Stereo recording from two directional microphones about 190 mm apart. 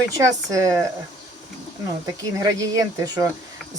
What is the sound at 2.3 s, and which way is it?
Speech, 20° right (ahead or behind).